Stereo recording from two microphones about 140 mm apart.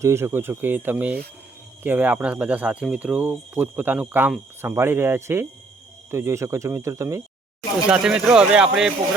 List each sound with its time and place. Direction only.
0.0 s speech: 20° right (ahead or behind)
7.9 s speech: 5° right (ahead or behind)